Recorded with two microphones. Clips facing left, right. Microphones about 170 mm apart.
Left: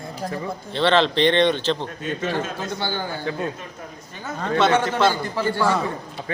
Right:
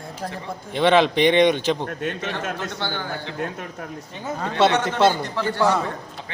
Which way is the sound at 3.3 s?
65° right (ahead or behind).